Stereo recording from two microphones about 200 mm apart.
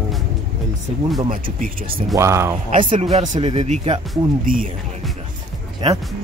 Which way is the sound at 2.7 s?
40° right (ahead or behind).